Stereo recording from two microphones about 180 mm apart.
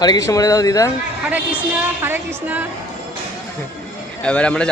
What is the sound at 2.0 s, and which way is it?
Speech, 10° right (ahead or behind).